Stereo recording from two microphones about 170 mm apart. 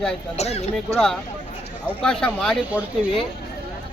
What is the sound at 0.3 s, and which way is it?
Speech, 40° left (ahead or behind).